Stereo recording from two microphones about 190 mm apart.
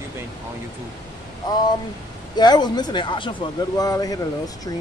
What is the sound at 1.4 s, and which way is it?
Speech, 20° left (ahead or behind).